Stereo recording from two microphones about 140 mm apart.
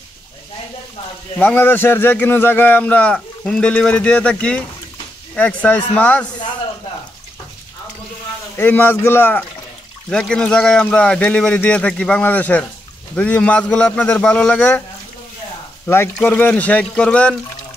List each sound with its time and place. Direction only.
1.4 s a man's voice: 10° left (ahead or behind)
8.5 s a man's voice: 15° left (ahead or behind)
16.2 s a man's voice: 10° left (ahead or behind)